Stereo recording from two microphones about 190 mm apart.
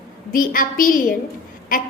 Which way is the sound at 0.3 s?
45° left (ahead or behind).